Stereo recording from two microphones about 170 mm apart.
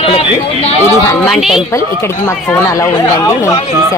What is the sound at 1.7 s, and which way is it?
Speech, 15° left (ahead or behind).